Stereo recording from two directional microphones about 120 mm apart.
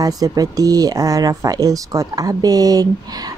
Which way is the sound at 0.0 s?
30° right (ahead or behind).